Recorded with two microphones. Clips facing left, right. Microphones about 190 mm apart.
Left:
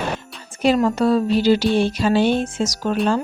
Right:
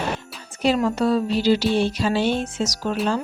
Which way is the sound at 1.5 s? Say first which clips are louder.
Left 1 dB; 55° left (ahead or behind).